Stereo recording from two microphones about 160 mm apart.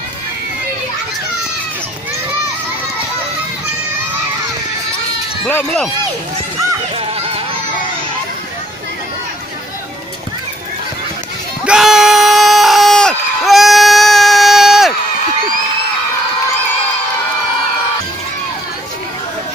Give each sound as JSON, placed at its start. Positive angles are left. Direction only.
{"t": 5.5, "sound": "speech", "side_deg": 10}
{"t": 7.0, "sound": "children playing", "side_deg": -35}
{"t": 11.6, "sound": "a sound", "side_deg": -5}